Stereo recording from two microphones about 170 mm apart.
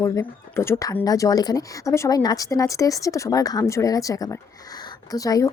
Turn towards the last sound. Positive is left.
turn(degrees=20)  # may be behind; listen again after turning